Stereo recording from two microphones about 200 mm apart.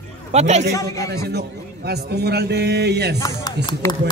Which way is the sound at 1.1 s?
55° right (ahead or behind).